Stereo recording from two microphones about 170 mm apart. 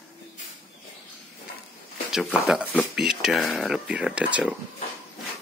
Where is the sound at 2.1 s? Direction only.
5° right (ahead or behind).